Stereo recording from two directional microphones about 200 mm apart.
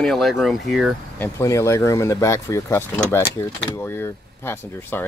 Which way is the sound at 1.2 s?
15° left (ahead or behind).